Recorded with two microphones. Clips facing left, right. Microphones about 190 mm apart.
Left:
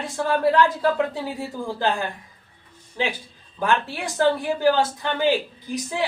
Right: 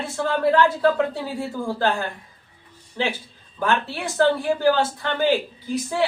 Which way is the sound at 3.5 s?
15° left (ahead or behind).